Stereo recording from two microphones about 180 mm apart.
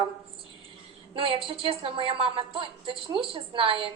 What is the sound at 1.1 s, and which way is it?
Speech, 30° right (ahead or behind).